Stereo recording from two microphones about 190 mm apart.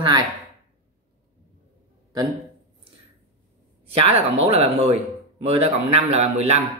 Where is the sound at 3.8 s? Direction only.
30° right (ahead or behind).